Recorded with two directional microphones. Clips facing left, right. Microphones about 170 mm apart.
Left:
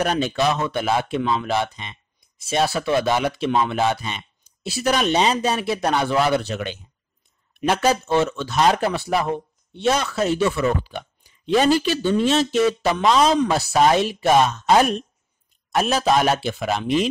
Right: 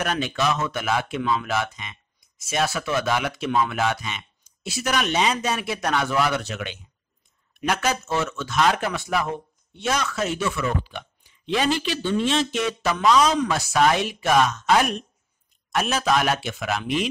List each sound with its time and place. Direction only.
0.0 s speech: 35° left (ahead or behind)